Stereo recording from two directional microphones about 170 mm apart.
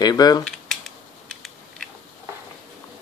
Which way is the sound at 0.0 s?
25° left (ahead or behind).